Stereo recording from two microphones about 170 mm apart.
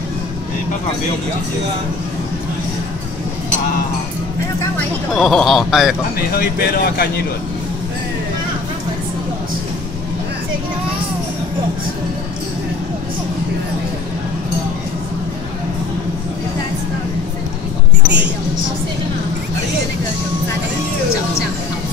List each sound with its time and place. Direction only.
4.7 s speech: 5° left (ahead or behind)
6.3 s speech: 60° left (ahead or behind)